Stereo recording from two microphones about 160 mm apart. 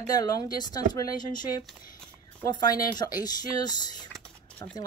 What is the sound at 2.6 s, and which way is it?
Speech, 25° left (ahead or behind).